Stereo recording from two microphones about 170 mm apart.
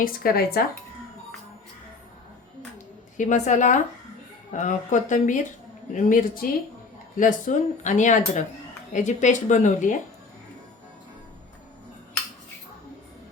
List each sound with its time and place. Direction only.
0.0 s speech: 60° left (ahead or behind)
3.2 s speech: 45° left (ahead or behind)